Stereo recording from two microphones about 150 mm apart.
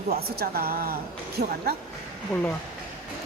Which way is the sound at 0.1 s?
90° right.